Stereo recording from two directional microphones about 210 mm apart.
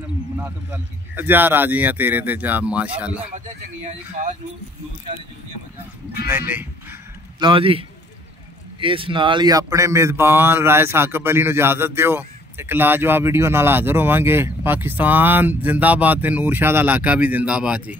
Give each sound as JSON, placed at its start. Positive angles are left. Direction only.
{"t": 0.4, "sound": "a man's voice", "side_deg": -10}
{"t": 6.2, "sound": "a man's voice", "side_deg": -10}
{"t": 7.3, "sound": "a man's voice", "side_deg": -25}